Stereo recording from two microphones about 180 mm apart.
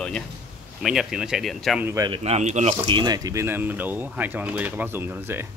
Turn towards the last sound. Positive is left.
turn(degrees=-10)  # may be behind; listen again after turning